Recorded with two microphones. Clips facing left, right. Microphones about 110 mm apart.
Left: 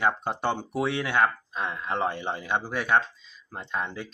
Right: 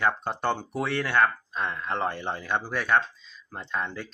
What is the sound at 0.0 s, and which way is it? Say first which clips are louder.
Speech: even; 5° left (ahead or behind).